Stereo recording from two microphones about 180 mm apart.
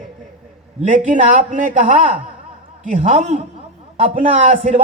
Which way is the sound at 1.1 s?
45° right (ahead or behind).